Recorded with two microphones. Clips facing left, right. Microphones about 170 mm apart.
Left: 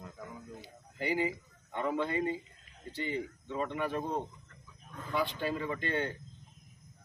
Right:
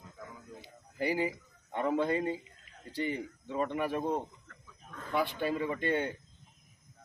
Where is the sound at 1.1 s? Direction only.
20° left (ahead or behind).